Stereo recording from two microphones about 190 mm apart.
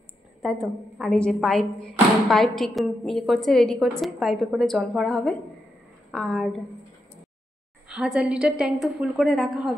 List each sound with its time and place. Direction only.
0.4 s speech: centre (ahead or behind)
7.9 s speech: 5° right (ahead or behind)